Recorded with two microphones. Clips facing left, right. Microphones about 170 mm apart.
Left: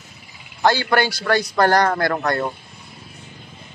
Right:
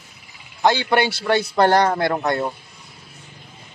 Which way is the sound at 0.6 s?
20° right (ahead or behind).